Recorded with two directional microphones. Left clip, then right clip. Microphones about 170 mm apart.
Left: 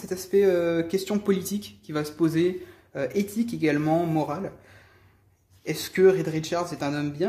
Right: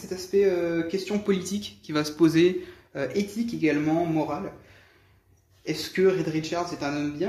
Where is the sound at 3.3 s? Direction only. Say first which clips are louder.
Right 1 dB; 40° left (ahead or behind).